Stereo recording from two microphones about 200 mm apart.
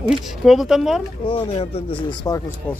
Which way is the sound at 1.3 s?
30° left (ahead or behind).